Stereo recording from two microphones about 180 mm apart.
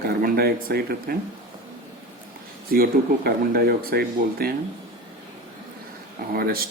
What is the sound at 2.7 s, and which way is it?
Speech, 55° right (ahead or behind).